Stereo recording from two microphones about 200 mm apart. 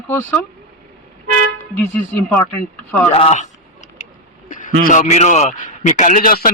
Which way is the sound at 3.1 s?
30° left (ahead or behind).